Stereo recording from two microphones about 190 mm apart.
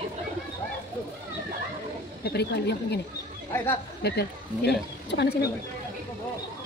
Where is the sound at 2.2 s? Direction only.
60° left (ahead or behind).